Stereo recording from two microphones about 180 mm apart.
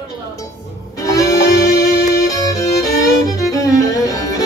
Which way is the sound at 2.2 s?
20° left (ahead or behind).